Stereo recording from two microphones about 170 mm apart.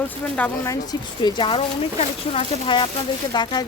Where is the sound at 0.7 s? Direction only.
25° left (ahead or behind).